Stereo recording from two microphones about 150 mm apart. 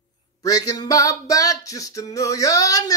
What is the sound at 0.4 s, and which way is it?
Music, 25° left (ahead or behind).